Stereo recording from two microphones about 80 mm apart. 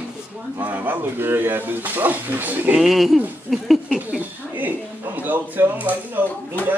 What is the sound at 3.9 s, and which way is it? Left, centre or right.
Speech, centre.